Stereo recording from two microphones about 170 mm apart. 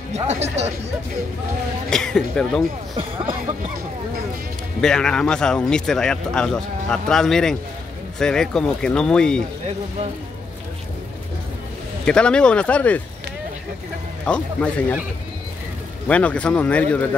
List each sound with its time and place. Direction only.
0.1 s speech: 40° right (ahead or behind)
1.9 s a man's voice: 5° left (ahead or behind)
4.8 s a man's voice: 5° left (ahead or behind)
12.0 s a man's voice: 5° left (ahead or behind)
14.2 s speech: 5° left (ahead or behind)
16.1 s speech: 5° left (ahead or behind)